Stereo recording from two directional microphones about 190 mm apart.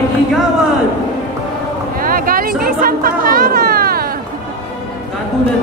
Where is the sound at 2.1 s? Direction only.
50° right (ahead or behind).